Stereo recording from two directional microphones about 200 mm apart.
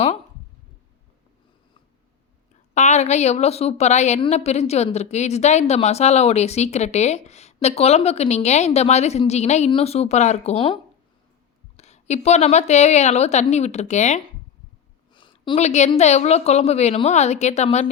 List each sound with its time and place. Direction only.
2.7 s a woman's voice: 35° left (ahead or behind)
11.8 s a woman's voice: 35° left (ahead or behind)
15.1 s a woman's voice: 25° left (ahead or behind)